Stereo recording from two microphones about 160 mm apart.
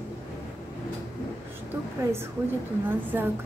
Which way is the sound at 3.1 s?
15° right (ahead or behind).